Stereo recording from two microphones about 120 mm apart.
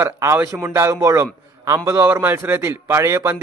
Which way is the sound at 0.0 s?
20° right (ahead or behind).